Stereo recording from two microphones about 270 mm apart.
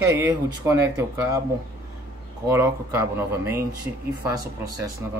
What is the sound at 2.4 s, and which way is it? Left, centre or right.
Speech, centre.